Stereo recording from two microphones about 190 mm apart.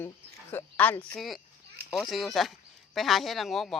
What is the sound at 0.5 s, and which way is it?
Speech, 10° left (ahead or behind).